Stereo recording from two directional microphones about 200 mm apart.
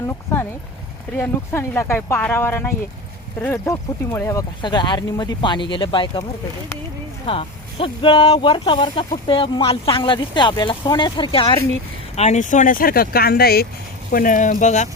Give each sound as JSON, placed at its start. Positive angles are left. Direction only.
{"t": 0.1, "sound": "a sound", "side_deg": 10}
{"t": 1.1, "sound": "speech", "side_deg": 10}
{"t": 7.3, "sound": "speech", "side_deg": 25}